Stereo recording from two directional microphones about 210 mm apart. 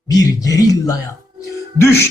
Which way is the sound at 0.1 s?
15° left (ahead or behind).